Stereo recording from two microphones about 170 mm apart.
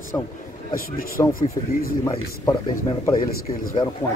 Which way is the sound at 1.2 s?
25° left (ahead or behind).